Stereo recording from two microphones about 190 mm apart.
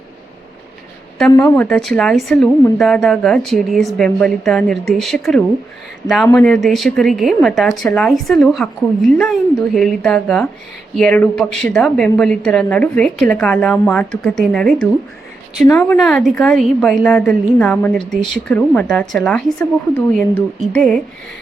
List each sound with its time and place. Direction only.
1.4 s a woman's voice: 10° left (ahead or behind)